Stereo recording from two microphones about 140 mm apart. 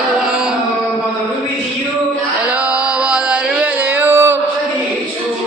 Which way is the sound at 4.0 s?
15° right (ahead or behind).